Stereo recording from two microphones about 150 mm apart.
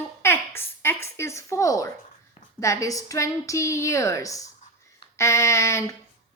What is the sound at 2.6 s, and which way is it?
Speech, 20° left (ahead or behind).